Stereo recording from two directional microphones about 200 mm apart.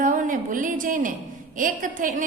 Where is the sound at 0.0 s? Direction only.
40° right (ahead or behind).